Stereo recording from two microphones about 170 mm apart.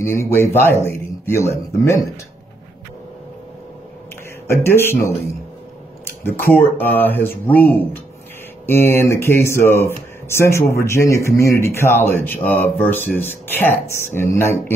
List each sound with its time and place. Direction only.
0.0 s speech: 15° left (ahead or behind)
4.5 s speech: 15° left (ahead or behind)
6.2 s speech: 10° left (ahead or behind)